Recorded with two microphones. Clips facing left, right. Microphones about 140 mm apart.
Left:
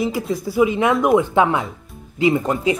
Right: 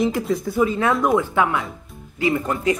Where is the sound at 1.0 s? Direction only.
25° left (ahead or behind).